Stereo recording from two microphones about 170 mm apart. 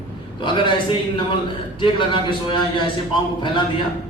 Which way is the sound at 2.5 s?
30° left (ahead or behind).